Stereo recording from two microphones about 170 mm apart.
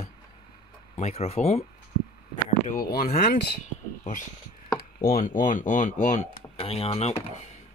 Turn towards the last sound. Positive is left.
turn(degrees=35)  # may be behind; listen again after turning